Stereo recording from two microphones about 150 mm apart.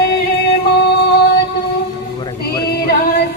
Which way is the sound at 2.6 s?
90° left.